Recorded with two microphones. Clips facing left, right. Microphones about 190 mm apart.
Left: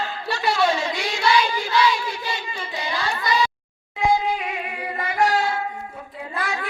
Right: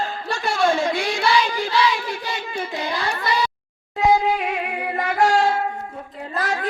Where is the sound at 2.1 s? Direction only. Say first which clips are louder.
Right 2 dB; 55° right (ahead or behind).